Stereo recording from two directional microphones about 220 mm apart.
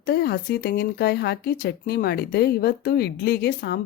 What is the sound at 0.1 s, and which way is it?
Speech, 45° left (ahead or behind).